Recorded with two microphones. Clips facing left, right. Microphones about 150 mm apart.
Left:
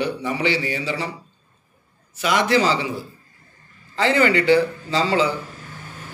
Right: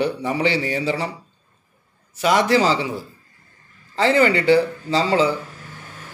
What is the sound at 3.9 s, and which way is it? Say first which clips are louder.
A man's voice: right 1 dB; 25° right (ahead or behind).